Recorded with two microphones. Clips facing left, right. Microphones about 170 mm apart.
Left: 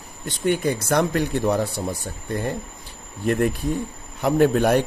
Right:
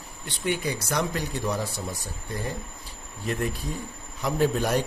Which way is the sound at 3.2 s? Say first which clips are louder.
Left 8 dB; 55° left (ahead or behind).